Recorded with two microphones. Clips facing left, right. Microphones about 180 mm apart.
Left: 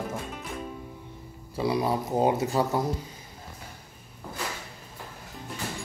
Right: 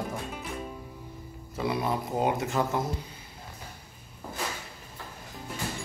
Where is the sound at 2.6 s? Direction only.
10° left (ahead or behind).